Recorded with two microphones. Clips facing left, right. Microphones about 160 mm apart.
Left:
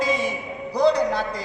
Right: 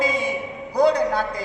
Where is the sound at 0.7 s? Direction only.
50° right (ahead or behind).